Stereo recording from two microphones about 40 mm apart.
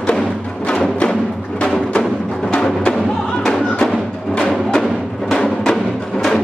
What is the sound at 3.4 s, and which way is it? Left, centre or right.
Music, centre.